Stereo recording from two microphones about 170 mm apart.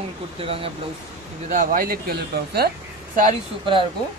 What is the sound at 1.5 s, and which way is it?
Speech, 50° right (ahead or behind).